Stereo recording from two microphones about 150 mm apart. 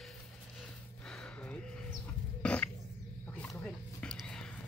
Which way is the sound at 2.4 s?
5° left (ahead or behind).